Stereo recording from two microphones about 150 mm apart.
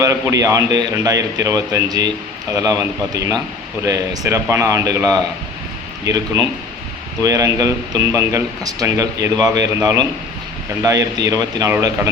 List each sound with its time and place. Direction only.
0.0 s speech: 20° right (ahead or behind)
7.2 s speech: 20° right (ahead or behind)